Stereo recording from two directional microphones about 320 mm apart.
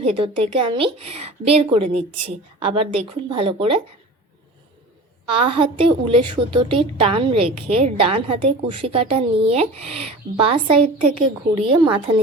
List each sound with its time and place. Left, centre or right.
0.0 s a woman's voice: centre
5.3 s a woman's voice: centre